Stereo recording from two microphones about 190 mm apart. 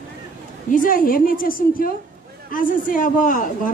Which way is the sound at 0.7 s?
45° left (ahead or behind).